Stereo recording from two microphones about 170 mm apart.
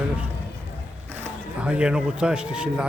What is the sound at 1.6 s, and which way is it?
A man's voice, 5° right (ahead or behind).